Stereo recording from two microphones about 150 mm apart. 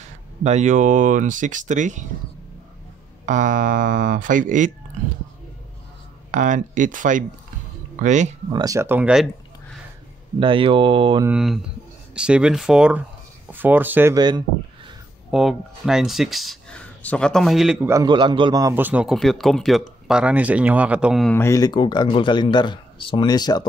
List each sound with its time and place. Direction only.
0.4 s speech: 50° right (ahead or behind)
3.3 s speech: 55° right (ahead or behind)
6.3 s speech: 55° right (ahead or behind)
8.5 s speech: 25° right (ahead or behind); by 9.3 s 5° right (ahead or behind)
10.4 s speech: 35° right (ahead or behind)
11.2 s speech: 5° right (ahead or behind)
14.1 s a man's voice: 30° right (ahead or behind)
15.3 s speech: centre (ahead or behind)
18.0 s a man's voice: 30° right (ahead or behind); by 19.1 s 10° right (ahead or behind)
19.1 s speech: centre (ahead or behind)
21.3 s speech: 20° left (ahead or behind)